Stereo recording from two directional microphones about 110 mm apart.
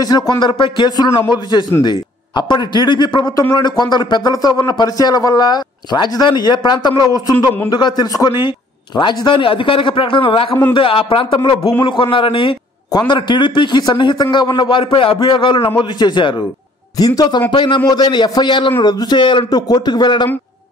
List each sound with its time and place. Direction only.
0.4 s a man's voice: 45° left (ahead or behind)